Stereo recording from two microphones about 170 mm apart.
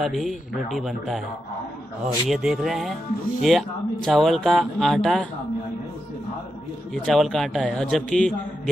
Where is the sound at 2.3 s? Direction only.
Centre (ahead or behind).